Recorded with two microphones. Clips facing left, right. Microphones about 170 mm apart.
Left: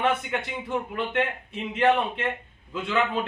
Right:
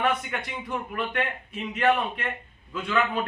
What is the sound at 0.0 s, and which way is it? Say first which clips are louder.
A man's voice: left 1 dB; 25° left (ahead or behind).